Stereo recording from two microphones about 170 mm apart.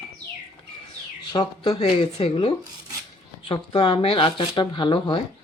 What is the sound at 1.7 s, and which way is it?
Speech, 35° left (ahead or behind).